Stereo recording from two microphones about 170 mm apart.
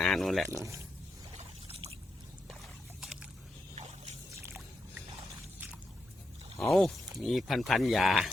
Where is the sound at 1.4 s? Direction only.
35° right (ahead or behind).